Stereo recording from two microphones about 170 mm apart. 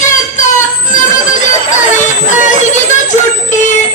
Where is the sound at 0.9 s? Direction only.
45° left (ahead or behind).